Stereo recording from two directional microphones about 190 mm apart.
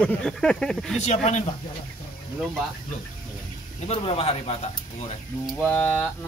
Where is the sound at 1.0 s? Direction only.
35° left (ahead or behind).